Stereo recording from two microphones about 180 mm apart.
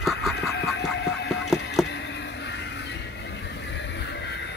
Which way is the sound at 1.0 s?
75° left (ahead or behind).